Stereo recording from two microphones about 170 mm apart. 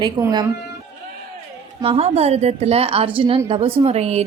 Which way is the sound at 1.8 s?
35° right (ahead or behind).